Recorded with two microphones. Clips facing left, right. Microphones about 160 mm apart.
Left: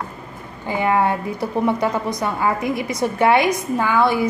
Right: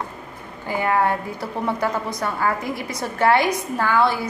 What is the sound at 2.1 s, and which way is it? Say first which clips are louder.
A woman's voice: left 2 dB; 20° left (ahead or behind).